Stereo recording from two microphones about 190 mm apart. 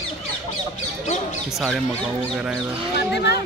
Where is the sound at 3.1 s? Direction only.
60° left (ahead or behind).